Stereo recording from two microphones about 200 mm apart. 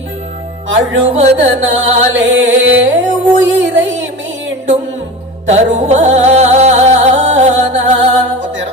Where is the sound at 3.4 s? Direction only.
70° right (ahead or behind).